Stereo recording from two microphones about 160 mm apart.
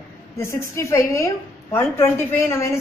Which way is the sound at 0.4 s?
15° left (ahead or behind).